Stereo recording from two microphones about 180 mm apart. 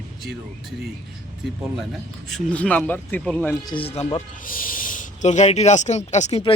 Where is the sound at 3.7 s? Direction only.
30° left (ahead or behind).